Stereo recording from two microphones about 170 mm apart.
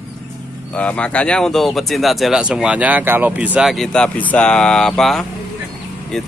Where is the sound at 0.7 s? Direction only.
5° left (ahead or behind).